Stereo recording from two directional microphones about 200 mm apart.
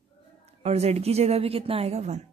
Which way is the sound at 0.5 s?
30° right (ahead or behind).